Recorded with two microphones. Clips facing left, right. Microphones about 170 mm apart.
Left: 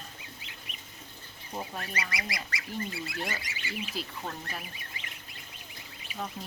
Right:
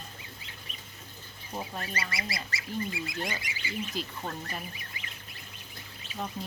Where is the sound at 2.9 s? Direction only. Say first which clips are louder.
Right 1 dB; 15° right (ahead or behind).